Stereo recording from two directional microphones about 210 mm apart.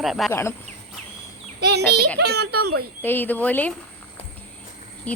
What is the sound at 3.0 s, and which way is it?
Speech, 10° left (ahead or behind).